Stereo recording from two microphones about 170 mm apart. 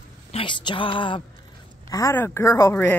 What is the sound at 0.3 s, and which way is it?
Speech, 30° left (ahead or behind).